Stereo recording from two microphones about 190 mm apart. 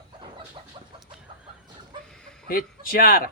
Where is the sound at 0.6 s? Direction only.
30° right (ahead or behind).